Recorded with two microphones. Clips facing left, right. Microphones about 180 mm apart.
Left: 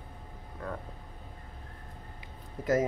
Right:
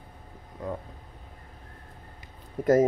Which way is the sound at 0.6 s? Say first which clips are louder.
Right 5 dB; 20° right (ahead or behind).